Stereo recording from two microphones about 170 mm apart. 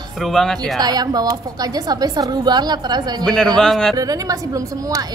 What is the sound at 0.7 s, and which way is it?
A woman's voice, 25° right (ahead or behind).